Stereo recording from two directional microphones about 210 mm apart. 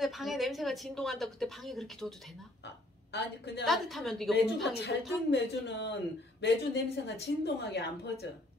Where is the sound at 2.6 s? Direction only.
55° left (ahead or behind).